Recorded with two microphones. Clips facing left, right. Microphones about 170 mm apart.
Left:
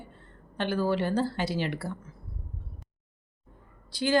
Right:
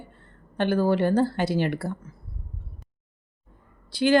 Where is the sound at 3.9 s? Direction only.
65° right (ahead or behind).